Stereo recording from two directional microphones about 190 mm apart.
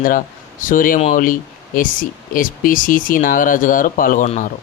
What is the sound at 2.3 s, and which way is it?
Speech, 45° left (ahead or behind).